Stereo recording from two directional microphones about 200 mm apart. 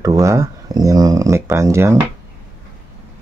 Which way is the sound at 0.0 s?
15° right (ahead or behind).